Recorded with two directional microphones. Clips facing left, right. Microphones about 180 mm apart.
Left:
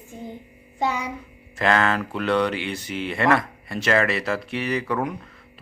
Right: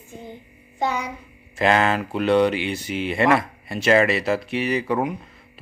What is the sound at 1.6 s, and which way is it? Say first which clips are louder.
Speech: right 2 dB; 20° right (ahead or behind).